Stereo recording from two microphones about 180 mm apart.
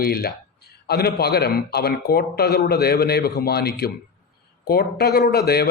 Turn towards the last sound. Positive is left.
turn(degrees=60)  # may be behind; listen again after turning